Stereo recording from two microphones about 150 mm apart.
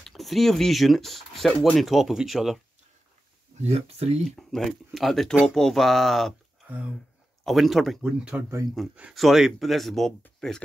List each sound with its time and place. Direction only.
0.0 s speech: centre (ahead or behind)
3.6 s speech: 45° right (ahead or behind)
4.4 s speech: centre (ahead or behind)